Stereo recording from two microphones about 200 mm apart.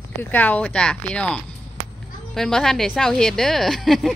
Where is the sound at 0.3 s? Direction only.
10° left (ahead or behind).